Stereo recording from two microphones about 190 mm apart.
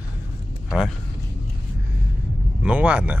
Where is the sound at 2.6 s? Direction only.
5° right (ahead or behind).